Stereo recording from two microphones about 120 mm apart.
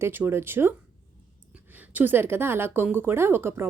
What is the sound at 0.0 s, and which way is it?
Speech, 20° right (ahead or behind).